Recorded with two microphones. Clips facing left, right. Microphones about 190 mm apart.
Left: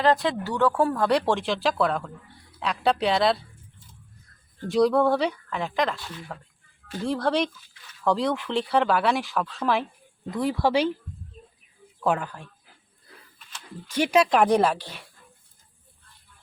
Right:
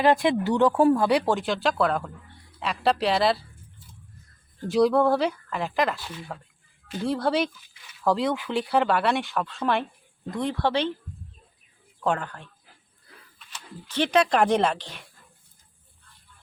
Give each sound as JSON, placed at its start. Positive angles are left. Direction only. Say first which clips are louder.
{"t": 0.0, "sound": "speech", "louder": "right 2 dB", "side_deg": -15}
{"t": 1.0, "sound": "speech", "louder": "even", "side_deg": -5}
{"t": 4.7, "sound": "speech", "louder": "even", "side_deg": 0}
{"t": 7.5, "sound": "speech", "louder": "left 1 dB", "side_deg": -15}
{"t": 8.0, "sound": "speech", "louder": "even", "side_deg": 0}
{"t": 12.0, "sound": "speech", "louder": "left 1 dB", "side_deg": 5}
{"t": 13.9, "sound": "speech", "louder": "left 1 dB", "side_deg": 10}